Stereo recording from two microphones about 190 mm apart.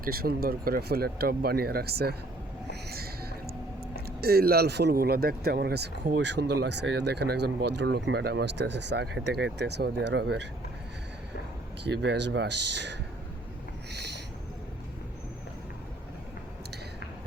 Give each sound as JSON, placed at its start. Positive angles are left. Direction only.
{"t": 0.0, "sound": "speech", "side_deg": -50}
{"t": 2.6, "sound": "a sound", "side_deg": -55}
{"t": 3.9, "sound": "speech", "side_deg": -55}
{"t": 11.8, "sound": "speech", "side_deg": -65}